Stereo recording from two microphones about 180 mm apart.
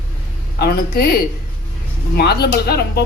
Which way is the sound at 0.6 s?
60° left (ahead or behind).